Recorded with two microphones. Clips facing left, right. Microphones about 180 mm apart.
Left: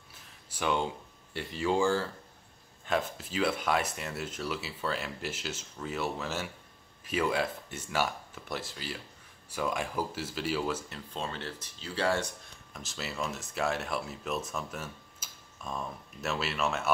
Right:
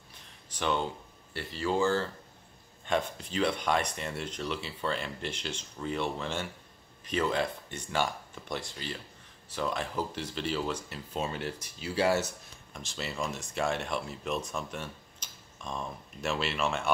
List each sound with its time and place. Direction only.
0.1 s a sound: 10° left (ahead or behind)
1.3 s speech: 15° left (ahead or behind)
11.1 s speech: 10° right (ahead or behind)
12.7 s speech: centre (ahead or behind)